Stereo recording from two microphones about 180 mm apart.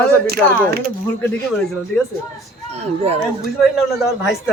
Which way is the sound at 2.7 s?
35° right (ahead or behind).